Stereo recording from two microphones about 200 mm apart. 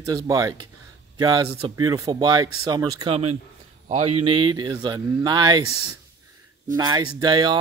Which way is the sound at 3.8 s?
30° right (ahead or behind).